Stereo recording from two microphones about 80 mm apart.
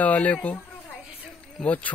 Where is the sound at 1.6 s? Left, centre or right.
Centre.